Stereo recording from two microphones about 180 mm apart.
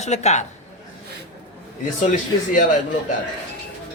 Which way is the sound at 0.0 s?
40° left (ahead or behind).